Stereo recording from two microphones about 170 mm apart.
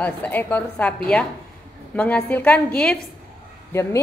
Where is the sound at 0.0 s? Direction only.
10° left (ahead or behind).